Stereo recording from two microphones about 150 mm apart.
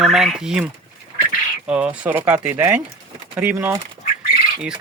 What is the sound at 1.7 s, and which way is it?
Speech, 10° right (ahead or behind).